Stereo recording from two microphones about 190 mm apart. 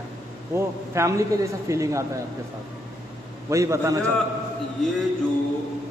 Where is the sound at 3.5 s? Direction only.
15° right (ahead or behind).